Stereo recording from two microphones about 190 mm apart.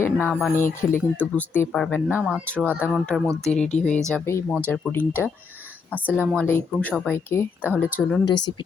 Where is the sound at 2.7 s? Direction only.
10° right (ahead or behind).